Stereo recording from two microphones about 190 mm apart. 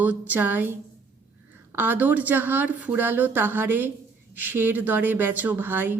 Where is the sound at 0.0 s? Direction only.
10° right (ahead or behind).